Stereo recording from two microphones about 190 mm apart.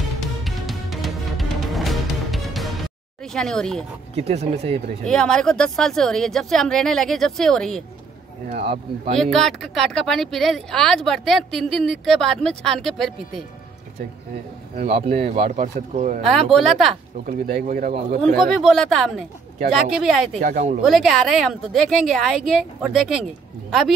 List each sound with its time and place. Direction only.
0.4 s music: centre (ahead or behind)
3.3 s speech: 5° left (ahead or behind)
4.1 s speech: 35° right (ahead or behind)
5.0 s speech: 5° left (ahead or behind)
8.5 s speech: 35° right (ahead or behind)
9.2 s speech: centre (ahead or behind)
14.8 s speech: 30° right (ahead or behind)
16.2 s speech: centre (ahead or behind)
17.3 s speech: 50° right (ahead or behind)
18.2 s speech: centre (ahead or behind)
20.3 s speech: 35° right (ahead or behind)
20.8 s speech: centre (ahead or behind)